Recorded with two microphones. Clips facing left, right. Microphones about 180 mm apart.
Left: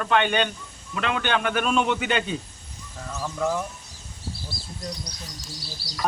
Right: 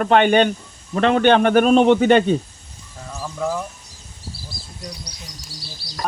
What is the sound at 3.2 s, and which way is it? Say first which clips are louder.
Speech: right 1 dB; 5° right (ahead or behind).